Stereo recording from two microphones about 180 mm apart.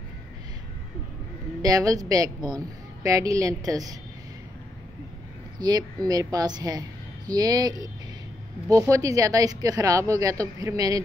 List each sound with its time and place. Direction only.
1.6 s speech: 20° right (ahead or behind)
5.6 s speech: 20° right (ahead or behind)